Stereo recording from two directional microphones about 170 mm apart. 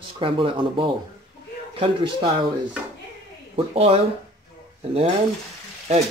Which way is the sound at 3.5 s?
35° right (ahead or behind).